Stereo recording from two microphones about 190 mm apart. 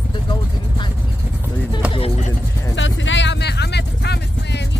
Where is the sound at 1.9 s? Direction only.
30° left (ahead or behind).